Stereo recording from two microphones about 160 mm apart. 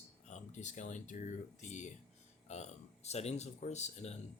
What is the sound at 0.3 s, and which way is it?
Speech, 45° left (ahead or behind).